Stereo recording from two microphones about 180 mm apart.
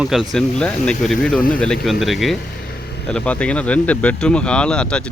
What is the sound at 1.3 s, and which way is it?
Speech, 50° left (ahead or behind).